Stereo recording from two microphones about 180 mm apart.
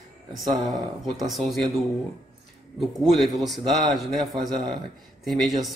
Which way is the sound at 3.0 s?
Centre (ahead or behind).